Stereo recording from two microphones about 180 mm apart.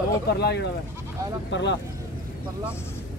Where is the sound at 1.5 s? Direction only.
85° left.